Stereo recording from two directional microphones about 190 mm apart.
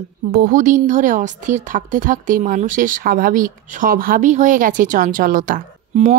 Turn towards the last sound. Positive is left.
turn(degrees=-40)  # may be behind; listen again after turning